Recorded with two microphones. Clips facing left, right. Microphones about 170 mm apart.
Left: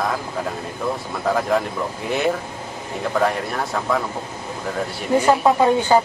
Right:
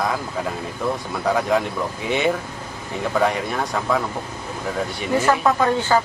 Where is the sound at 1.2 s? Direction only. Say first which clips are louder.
Even; centre (ahead or behind).